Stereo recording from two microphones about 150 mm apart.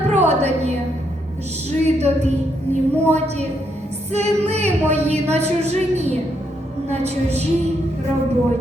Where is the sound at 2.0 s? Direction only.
45° right (ahead or behind).